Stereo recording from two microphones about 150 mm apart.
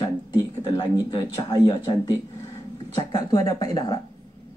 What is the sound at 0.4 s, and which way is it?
Speech, 25° left (ahead or behind).